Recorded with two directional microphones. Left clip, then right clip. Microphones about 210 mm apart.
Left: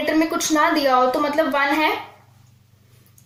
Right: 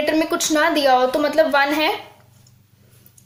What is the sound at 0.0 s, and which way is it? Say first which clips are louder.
Speech: right 1 dB; 25° right (ahead or behind).